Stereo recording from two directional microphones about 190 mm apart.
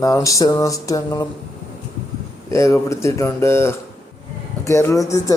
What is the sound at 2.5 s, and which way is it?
Speech, 15° left (ahead or behind).